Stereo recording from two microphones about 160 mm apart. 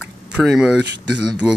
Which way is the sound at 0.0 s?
5° right (ahead or behind).